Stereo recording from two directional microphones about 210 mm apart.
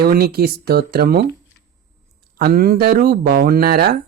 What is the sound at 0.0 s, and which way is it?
Speech, 45° right (ahead or behind).